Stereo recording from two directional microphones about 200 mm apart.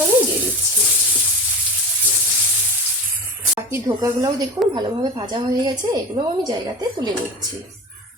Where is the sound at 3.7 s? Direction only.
15° right (ahead or behind).